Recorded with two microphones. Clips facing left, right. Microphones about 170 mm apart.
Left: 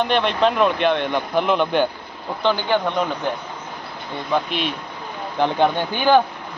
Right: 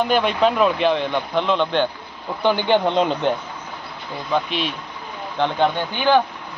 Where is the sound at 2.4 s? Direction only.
20° right (ahead or behind).